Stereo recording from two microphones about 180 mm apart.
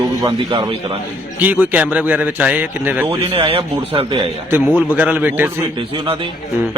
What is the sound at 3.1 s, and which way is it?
Speech, 30° right (ahead or behind).